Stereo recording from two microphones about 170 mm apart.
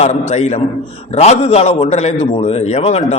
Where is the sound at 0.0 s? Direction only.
40° left (ahead or behind).